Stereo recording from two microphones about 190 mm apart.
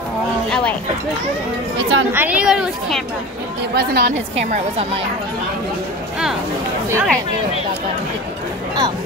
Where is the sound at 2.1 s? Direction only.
10° right (ahead or behind).